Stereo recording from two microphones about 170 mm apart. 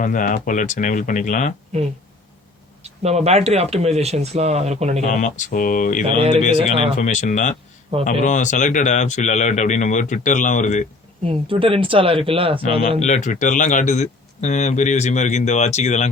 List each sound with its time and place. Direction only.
0.0 s speech: 50° left (ahead or behind)
2.8 s speech: 40° right (ahead or behind)
5.0 s speech: 45° left (ahead or behind)
6.1 s speech: 35° right (ahead or behind)
7.0 s speech: 45° left (ahead or behind)
11.3 s speech: 30° right (ahead or behind)
13.0 s speech: 45° left (ahead or behind)